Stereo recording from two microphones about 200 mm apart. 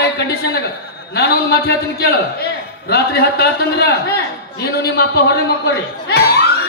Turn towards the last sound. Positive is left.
turn(degrees=50)  # may be behind; listen again after turning